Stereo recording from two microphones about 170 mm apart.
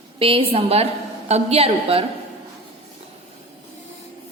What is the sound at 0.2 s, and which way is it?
A woman's voice, 35° right (ahead or behind).